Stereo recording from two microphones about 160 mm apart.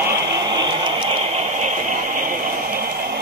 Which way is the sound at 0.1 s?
25° right (ahead or behind).